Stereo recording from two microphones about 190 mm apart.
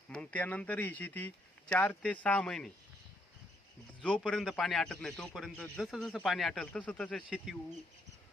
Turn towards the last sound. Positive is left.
turn(degrees=0)  # may be behind; listen again after turning